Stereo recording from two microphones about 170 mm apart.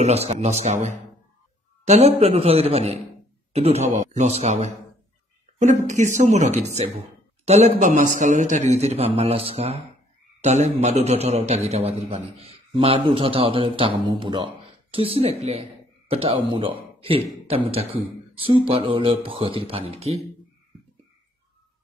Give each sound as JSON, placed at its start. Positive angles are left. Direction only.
{"t": 0.0, "sound": "a man's voice", "side_deg": -40}